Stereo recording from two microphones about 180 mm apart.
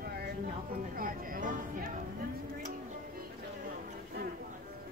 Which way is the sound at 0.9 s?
50° right (ahead or behind).